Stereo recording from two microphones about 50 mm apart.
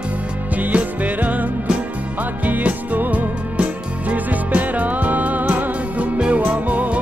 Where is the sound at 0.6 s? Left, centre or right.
Right.